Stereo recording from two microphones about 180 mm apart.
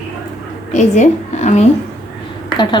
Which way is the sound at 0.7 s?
40° left (ahead or behind).